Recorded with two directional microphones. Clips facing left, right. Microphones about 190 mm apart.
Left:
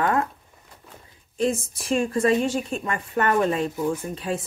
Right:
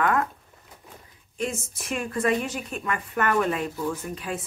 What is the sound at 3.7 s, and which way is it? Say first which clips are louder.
Speech: left 4 dB; 20° left (ahead or behind).